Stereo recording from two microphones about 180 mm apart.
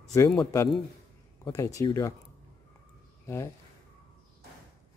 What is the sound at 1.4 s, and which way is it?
Speech, 20° left (ahead or behind).